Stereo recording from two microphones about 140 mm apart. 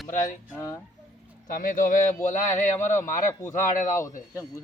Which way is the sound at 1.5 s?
80° left.